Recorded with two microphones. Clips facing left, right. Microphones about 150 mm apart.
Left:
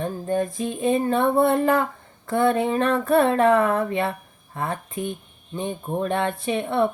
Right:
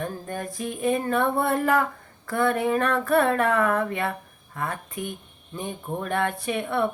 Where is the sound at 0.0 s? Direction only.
25° left (ahead or behind).